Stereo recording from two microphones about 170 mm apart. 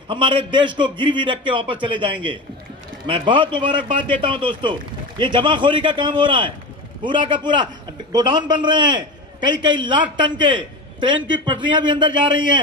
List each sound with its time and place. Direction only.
0.1 s a man's voice: 30° right (ahead or behind)